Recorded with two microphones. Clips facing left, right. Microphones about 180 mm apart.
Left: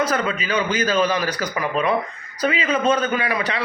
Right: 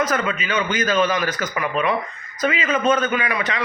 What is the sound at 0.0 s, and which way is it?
A man's voice, 35° left (ahead or behind).